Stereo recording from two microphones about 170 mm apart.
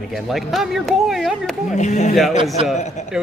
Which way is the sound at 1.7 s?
45° left (ahead or behind).